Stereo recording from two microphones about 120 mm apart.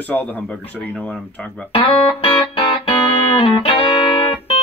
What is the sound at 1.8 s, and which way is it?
Music, 50° left (ahead or behind).